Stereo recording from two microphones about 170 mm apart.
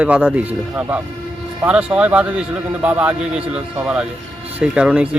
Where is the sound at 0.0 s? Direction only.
5° right (ahead or behind).